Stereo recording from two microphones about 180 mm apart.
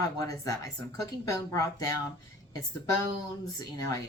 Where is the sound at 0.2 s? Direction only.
20° left (ahead or behind).